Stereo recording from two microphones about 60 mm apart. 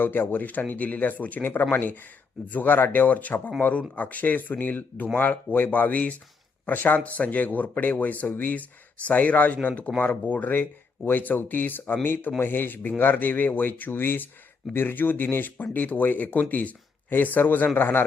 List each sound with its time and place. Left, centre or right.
0.0 s speech: left